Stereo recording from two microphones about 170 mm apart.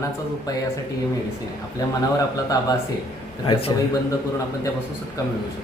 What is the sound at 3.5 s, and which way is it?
Speech, 35° left (ahead or behind).